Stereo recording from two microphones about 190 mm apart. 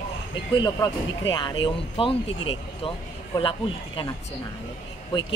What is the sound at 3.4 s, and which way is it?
Speech, 25° left (ahead or behind).